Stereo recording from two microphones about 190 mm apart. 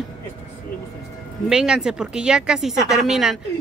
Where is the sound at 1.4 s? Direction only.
5° right (ahead or behind).